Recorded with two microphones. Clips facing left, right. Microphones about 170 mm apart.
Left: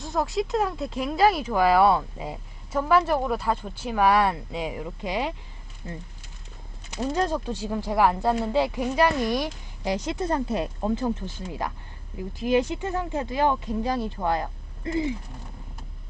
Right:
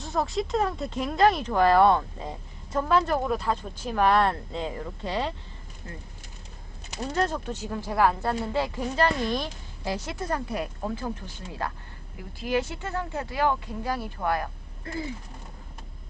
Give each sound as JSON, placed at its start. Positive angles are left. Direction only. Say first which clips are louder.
{"t": 0.0, "sound": "speech", "louder": "left 2 dB", "side_deg": 0}
{"t": 7.1, "sound": "speech", "louder": "left 1 dB", "side_deg": 15}